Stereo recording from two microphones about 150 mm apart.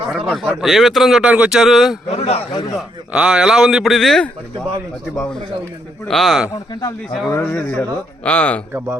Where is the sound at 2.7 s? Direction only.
5° right (ahead or behind).